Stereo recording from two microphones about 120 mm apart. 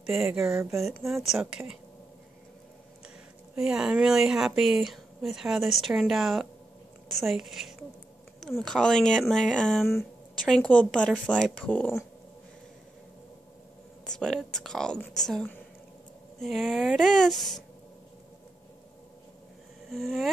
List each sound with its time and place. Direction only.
0.2 s speech: 20° right (ahead or behind)
0.7 s speech: centre (ahead or behind)
3.5 s speech: 5° right (ahead or behind); by 11.9 s 15° left (ahead or behind)
14.0 s speech: 5° left (ahead or behind)
16.3 s speech: centre (ahead or behind)
19.9 s speech: centre (ahead or behind)